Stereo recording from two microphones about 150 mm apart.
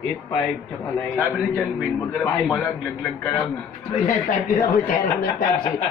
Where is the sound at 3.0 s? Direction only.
15° left (ahead or behind).